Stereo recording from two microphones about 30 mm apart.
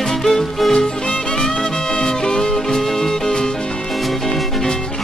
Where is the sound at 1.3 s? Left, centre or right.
Left.